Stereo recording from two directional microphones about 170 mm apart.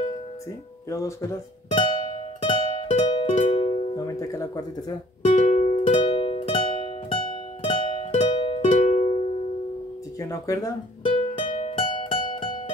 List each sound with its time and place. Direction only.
0.8 s speech: 20° left (ahead or behind)
1.7 s music: 30° left (ahead or behind)
3.3 s music: 40° left (ahead or behind)
3.9 s speech: 20° left (ahead or behind)
5.2 s music: 45° left (ahead or behind)
5.9 s music: 30° left (ahead or behind)
8.6 s music: 45° left (ahead or behind)
10.2 s speech: 20° left (ahead or behind)
11.1 s music: 40° left (ahead or behind)